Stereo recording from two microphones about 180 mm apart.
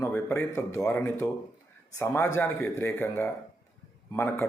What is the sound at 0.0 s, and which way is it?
A man's voice, 10° left (ahead or behind).